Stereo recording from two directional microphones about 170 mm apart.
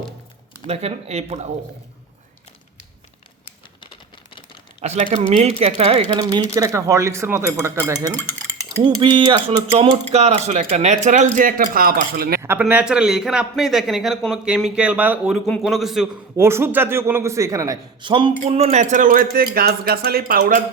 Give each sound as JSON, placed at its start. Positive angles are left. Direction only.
{"t": 0.7, "sound": "speech", "side_deg": -35}
{"t": 4.8, "sound": "speech", "side_deg": -40}
{"t": 6.6, "sound": "a man's voice", "side_deg": -20}
{"t": 8.1, "sound": "dishes", "side_deg": 15}
{"t": 8.8, "sound": "speech", "side_deg": -25}
{"t": 12.4, "sound": "a man's voice", "side_deg": -10}
{"t": 16.4, "sound": "a man's voice", "side_deg": -15}